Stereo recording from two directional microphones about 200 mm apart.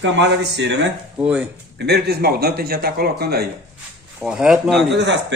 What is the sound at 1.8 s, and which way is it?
A man's voice, 55° right (ahead or behind).